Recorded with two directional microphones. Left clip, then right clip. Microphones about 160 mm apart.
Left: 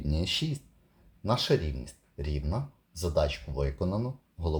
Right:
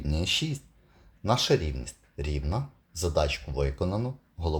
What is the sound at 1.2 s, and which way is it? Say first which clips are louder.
Speech: right 3 dB; 20° right (ahead or behind).